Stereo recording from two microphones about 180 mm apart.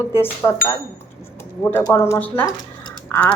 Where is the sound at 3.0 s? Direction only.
10° left (ahead or behind).